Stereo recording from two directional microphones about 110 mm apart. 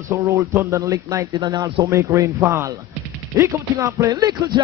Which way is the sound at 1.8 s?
25° right (ahead or behind).